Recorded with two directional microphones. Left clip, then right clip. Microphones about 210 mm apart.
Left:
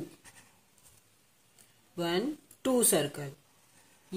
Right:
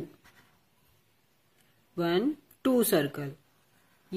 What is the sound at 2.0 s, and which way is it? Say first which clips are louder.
Speech: right 4 dB; 25° right (ahead or behind).